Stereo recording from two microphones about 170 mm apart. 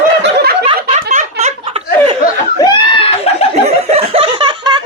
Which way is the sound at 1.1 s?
45° right (ahead or behind).